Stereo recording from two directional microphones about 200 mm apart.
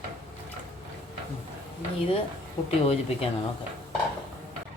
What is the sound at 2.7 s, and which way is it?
Speech, 30° left (ahead or behind).